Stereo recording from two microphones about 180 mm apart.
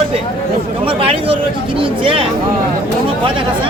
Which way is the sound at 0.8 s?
30° right (ahead or behind).